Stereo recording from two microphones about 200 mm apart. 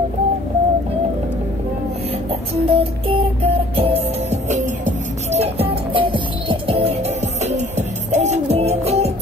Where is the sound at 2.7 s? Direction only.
30° right (ahead or behind).